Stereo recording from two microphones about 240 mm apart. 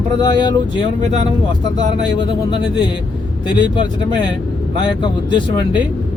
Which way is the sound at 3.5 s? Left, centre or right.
Centre.